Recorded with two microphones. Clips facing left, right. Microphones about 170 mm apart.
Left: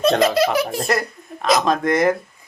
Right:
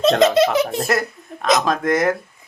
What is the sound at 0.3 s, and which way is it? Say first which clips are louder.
Speech: right 2 dB; 20° right (ahead or behind).